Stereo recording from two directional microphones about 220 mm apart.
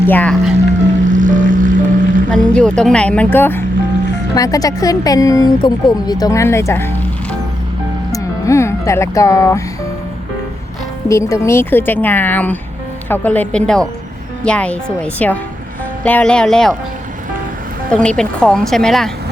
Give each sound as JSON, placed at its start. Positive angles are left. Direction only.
{"t": 0.1, "sound": "speech", "side_deg": 5}
{"t": 1.0, "sound": "music", "side_deg": -35}
{"t": 2.3, "sound": "a woman's voice", "side_deg": 5}
{"t": 11.1, "sound": "a woman's voice", "side_deg": 15}
{"t": 17.9, "sound": "speech", "side_deg": 5}